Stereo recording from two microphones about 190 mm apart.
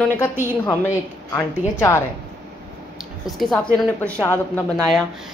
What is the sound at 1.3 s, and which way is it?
Speech, 15° left (ahead or behind).